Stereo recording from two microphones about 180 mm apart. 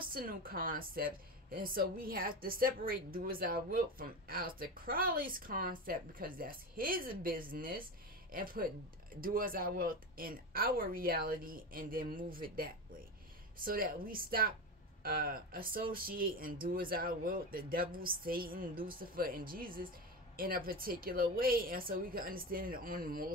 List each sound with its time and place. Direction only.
0.0 s a woman's voice: 55° right (ahead or behind)